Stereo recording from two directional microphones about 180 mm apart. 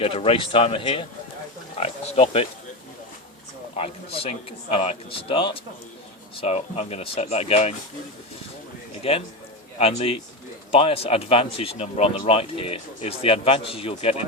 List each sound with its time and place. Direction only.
0.0 s speech: 30° left (ahead or behind)
3.8 s speech: 35° left (ahead or behind)
9.0 s speech: 35° left (ahead or behind)